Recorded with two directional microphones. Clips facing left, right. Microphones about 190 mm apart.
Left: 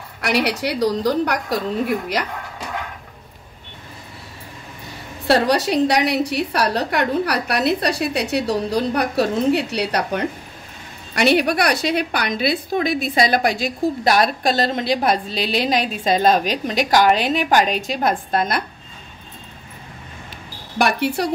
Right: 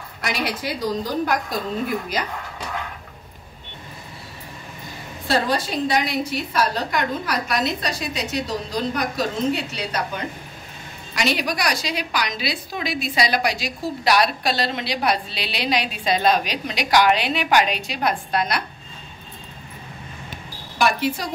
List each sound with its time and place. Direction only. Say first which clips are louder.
0.2 s a woman's voice: left 6 dB; 75° left (ahead or behind)
5.2 s a woman's voice: left 5 dB; 75° left (ahead or behind); by 18.6 s 45° left (ahead or behind)
20.7 s a woman's voice: left 2 dB; 65° left (ahead or behind)